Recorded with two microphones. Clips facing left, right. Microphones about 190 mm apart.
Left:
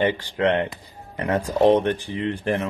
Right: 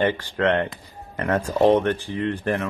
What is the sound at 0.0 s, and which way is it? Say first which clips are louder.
Speech: even; 15° left (ahead or behind).